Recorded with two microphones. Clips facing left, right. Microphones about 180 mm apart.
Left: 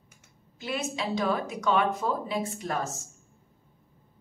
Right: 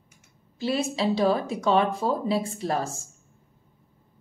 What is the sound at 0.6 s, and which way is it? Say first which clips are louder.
Speech: right 6 dB; 30° right (ahead or behind).